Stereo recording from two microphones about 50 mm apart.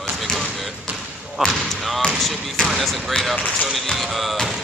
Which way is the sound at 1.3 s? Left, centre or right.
Centre.